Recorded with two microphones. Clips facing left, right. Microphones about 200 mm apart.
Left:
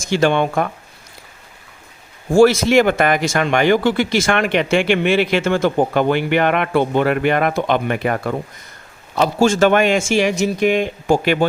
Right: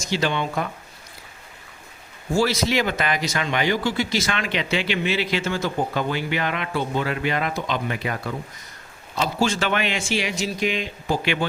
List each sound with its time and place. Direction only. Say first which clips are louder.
0.1 s speech: left 8 dB; 55° left (ahead or behind)
2.3 s speech: left 10 dB; 50° left (ahead or behind)